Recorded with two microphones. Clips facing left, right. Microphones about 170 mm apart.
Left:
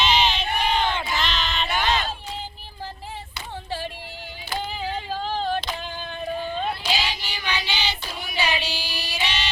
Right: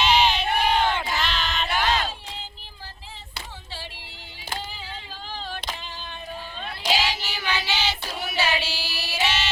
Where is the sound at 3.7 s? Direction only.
50° left (ahead or behind).